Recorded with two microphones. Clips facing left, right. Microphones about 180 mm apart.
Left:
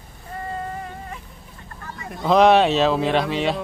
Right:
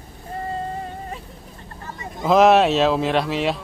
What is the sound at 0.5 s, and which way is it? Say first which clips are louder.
Vehicle: right 1 dB; 30° right (ahead or behind).